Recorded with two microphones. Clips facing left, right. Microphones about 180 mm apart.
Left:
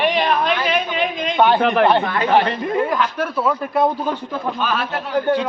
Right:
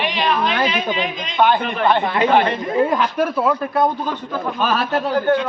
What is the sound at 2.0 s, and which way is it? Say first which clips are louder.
Speech: right 3 dB; 20° right (ahead or behind).